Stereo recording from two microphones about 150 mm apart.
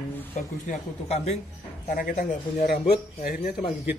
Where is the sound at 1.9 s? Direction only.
65° left (ahead or behind); by 3.0 s 85° left.